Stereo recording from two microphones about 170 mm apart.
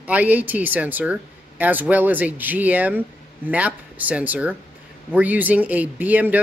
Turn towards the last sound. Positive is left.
turn(degrees=-10)  # may be behind; listen again after turning